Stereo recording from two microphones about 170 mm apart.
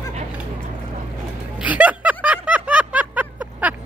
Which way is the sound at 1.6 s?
10° right (ahead or behind).